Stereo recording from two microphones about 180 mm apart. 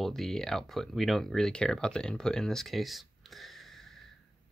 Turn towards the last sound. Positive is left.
turn(degrees=0)  # may be behind; listen again after turning